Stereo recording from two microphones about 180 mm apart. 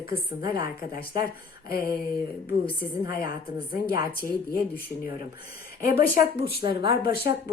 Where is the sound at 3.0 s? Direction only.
55° left (ahead or behind).